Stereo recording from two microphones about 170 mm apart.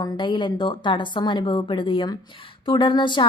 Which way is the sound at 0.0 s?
30° left (ahead or behind).